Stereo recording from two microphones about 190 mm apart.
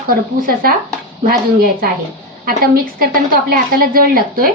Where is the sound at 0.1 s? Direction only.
50° right (ahead or behind).